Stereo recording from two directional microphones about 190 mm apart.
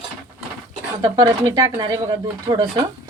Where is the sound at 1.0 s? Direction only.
20° right (ahead or behind).